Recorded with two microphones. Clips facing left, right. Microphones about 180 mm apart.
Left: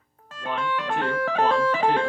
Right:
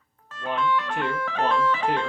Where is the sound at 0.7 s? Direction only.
40° left (ahead or behind).